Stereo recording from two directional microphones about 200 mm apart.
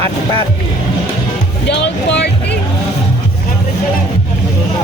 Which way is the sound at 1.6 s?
60° left (ahead or behind).